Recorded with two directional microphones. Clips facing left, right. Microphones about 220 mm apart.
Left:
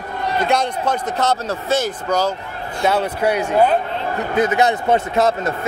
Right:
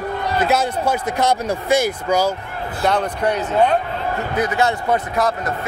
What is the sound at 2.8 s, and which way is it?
Speech, 5° left (ahead or behind).